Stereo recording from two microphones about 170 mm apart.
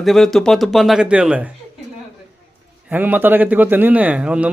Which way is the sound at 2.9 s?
10° right (ahead or behind).